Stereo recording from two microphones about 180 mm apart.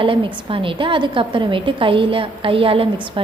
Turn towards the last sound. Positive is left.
turn(degrees=-30)  # may be behind; listen again after turning